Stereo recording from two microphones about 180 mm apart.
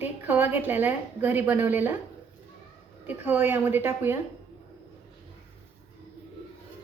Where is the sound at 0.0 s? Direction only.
10° right (ahead or behind).